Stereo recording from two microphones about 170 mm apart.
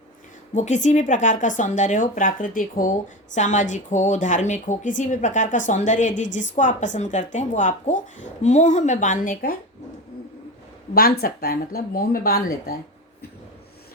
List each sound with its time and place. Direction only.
0.5 s a woman's voice: 45° left (ahead or behind)
10.9 s speech: 60° left (ahead or behind)